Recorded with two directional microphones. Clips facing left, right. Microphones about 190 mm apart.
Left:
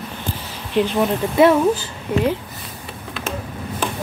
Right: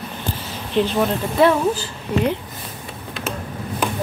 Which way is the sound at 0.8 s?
10° left (ahead or behind).